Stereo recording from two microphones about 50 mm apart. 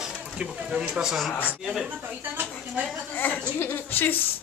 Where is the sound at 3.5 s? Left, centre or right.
Left.